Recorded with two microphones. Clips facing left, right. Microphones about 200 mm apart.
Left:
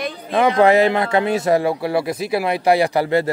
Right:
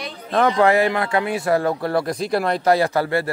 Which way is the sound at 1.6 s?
10° left (ahead or behind).